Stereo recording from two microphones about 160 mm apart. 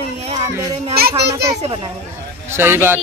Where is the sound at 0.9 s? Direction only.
75° right (ahead or behind).